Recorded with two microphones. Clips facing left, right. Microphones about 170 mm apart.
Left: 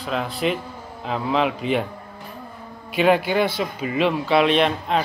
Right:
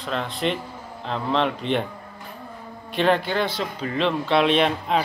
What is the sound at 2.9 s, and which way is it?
A man's voice, 10° left (ahead or behind).